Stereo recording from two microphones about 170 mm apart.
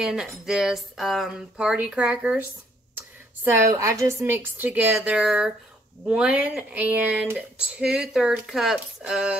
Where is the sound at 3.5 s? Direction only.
15° right (ahead or behind).